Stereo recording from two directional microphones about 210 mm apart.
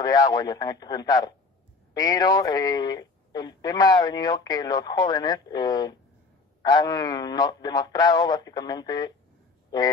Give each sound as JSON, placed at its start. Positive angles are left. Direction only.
{"t": 0.0, "sound": "speech", "side_deg": 20}